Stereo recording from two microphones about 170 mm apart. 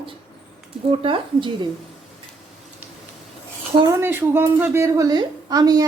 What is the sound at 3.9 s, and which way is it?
A woman's voice, 15° right (ahead or behind).